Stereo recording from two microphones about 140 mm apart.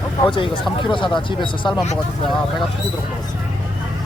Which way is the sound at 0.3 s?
35° left (ahead or behind).